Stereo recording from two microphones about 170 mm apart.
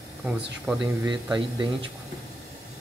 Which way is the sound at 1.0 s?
25° right (ahead or behind).